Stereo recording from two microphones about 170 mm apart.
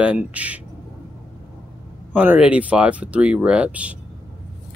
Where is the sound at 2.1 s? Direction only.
10° right (ahead or behind).